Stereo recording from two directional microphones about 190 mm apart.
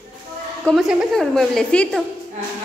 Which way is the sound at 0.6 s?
Centre (ahead or behind).